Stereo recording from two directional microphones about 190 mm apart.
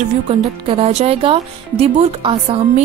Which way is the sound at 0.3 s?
30° right (ahead or behind).